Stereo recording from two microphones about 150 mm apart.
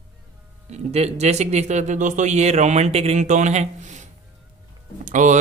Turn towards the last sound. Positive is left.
turn(degrees=-55)  # may be behind; listen again after turning